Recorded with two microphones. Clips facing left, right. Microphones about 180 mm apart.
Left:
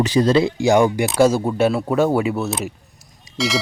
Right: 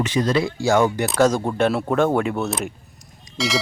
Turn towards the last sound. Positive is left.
turn(degrees=0)  # may be behind; listen again after turning